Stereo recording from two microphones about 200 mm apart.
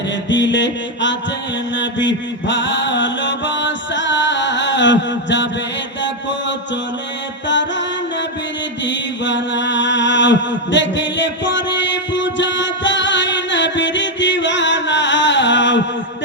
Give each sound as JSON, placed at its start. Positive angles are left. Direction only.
{"t": 0.3, "sound": "mantra", "side_deg": 65}
{"t": 7.4, "sound": "music", "side_deg": 65}
{"t": 8.8, "sound": "mantra", "side_deg": 65}